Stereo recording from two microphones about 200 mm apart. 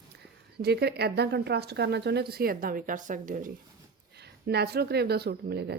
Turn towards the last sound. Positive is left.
turn(degrees=-55)  # may be behind; listen again after turning